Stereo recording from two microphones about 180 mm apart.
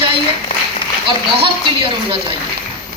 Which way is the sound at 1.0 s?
30° right (ahead or behind).